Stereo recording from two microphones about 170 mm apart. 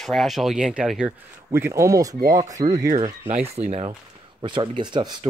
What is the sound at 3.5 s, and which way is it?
Speech, 40° right (ahead or behind).